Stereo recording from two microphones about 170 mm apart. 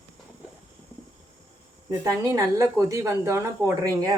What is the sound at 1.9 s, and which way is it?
A woman's voice, 20° right (ahead or behind).